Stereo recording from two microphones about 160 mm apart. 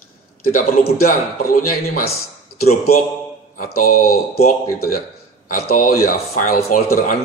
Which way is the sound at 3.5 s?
60° left (ahead or behind).